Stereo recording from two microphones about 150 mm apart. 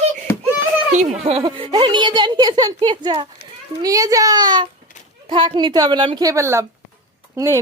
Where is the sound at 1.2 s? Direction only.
40° right (ahead or behind).